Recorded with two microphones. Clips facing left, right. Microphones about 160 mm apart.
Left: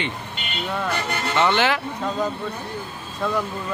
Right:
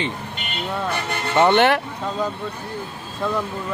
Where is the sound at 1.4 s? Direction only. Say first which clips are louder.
Right 5 dB; 55° right (ahead or behind).